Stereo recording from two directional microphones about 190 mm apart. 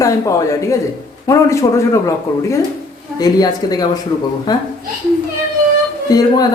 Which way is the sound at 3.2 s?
20° left (ahead or behind).